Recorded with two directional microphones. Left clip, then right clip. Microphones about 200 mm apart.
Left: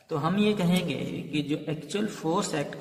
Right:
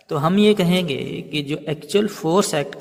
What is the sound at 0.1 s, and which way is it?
A man's voice, 45° right (ahead or behind).